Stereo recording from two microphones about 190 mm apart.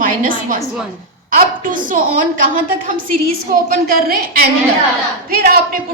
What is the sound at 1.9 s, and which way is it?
A woman's voice, 45° right (ahead or behind).